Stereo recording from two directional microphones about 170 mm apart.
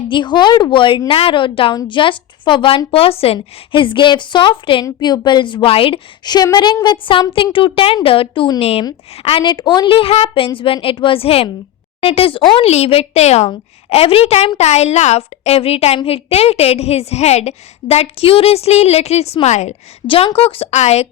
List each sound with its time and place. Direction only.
0.1 s a woman's voice: 25° left (ahead or behind)